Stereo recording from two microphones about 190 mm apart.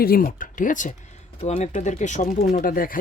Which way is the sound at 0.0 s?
50° left (ahead or behind).